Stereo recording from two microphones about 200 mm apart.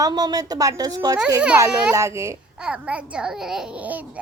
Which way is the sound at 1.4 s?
5° right (ahead or behind).